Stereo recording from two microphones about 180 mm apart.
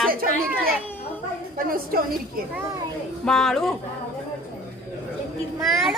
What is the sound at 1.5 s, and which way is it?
Speech, 55° right (ahead or behind).